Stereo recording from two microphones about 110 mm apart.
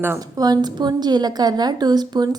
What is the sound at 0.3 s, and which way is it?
A woman's voice, 35° right (ahead or behind).